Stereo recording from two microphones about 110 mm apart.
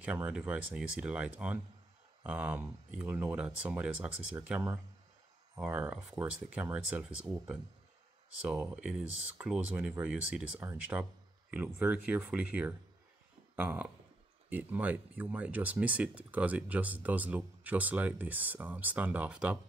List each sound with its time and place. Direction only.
0.0 s speech: 15° right (ahead or behind)
5.7 s speech: 15° right (ahead or behind)
8.8 s speech: 10° right (ahead or behind)
10.6 s speech: 25° right (ahead or behind)
11.5 s speech: 15° right (ahead or behind)